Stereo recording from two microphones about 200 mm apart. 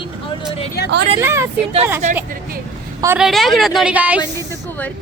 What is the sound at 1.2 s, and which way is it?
Speech, 15° right (ahead or behind).